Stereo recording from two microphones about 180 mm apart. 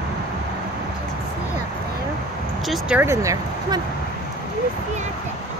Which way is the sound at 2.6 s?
5° right (ahead or behind).